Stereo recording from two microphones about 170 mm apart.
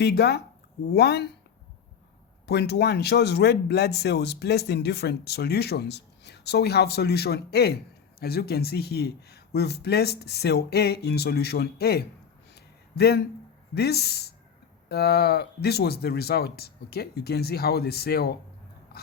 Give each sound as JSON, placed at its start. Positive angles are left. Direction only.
{"t": 0.0, "sound": "speech", "side_deg": 75}
{"t": 2.5, "sound": "speech", "side_deg": 75}